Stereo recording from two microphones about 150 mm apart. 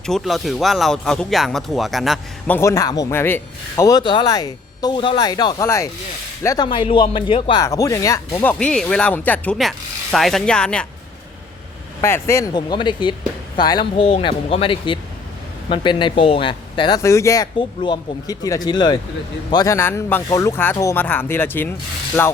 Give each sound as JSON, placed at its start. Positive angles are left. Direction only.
{"t": 0.0, "sound": "speech", "side_deg": 0}
{"t": 2.5, "sound": "a man's voice", "side_deg": 20}
{"t": 6.7, "sound": "speech", "side_deg": 35}
{"t": 7.6, "sound": "speech", "side_deg": 20}
{"t": 12.0, "sound": "speech", "side_deg": 15}
{"t": 12.7, "sound": "speech", "side_deg": 30}
{"t": 17.0, "sound": "a man's voice", "side_deg": 20}
{"t": 19.7, "sound": "speech", "side_deg": 15}